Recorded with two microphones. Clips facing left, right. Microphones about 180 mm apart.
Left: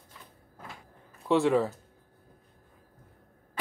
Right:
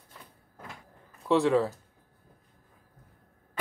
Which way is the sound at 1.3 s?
Centre (ahead or behind).